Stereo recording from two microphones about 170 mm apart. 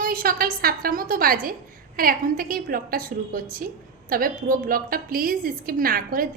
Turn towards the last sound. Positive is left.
turn(degrees=-55)  # may be behind; listen again after turning